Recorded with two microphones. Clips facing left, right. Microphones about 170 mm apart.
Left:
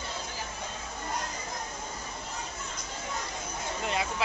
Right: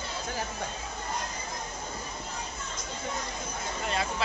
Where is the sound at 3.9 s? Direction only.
15° left (ahead or behind).